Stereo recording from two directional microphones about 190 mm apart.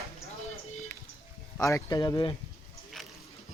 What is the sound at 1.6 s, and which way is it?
Speech, 20° left (ahead or behind).